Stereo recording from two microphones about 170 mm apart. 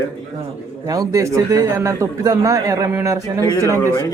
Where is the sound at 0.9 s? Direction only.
20° right (ahead or behind).